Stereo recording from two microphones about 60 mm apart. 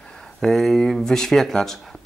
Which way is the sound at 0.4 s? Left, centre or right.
Centre.